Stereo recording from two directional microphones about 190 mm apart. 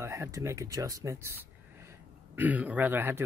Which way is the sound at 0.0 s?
15° right (ahead or behind).